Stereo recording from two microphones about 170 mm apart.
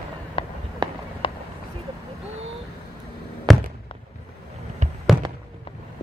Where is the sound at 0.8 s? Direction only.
25° right (ahead or behind).